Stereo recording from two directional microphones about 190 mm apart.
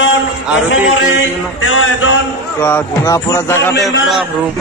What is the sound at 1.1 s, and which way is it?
Mantra, 90° left.